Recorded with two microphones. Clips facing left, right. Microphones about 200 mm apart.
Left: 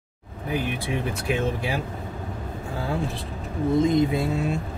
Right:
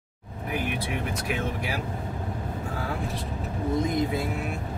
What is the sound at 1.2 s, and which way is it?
Speech, 25° left (ahead or behind).